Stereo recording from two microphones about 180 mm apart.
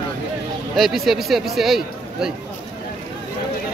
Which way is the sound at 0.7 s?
Centre (ahead or behind).